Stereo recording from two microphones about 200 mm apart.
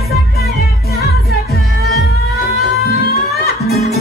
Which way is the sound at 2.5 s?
50° left (ahead or behind).